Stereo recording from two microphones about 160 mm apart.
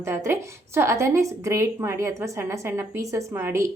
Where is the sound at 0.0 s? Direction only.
15° right (ahead or behind).